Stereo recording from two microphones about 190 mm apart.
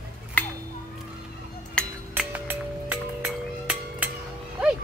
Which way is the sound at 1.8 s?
5° left (ahead or behind).